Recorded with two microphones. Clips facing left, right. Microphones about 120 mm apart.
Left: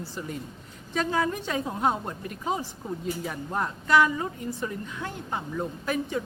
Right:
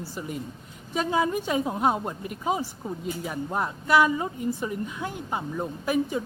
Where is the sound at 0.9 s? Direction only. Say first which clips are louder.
Right 2 dB; 15° right (ahead or behind).